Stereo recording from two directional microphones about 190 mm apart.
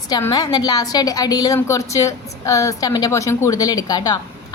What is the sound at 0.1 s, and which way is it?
A woman's voice, 20° left (ahead or behind).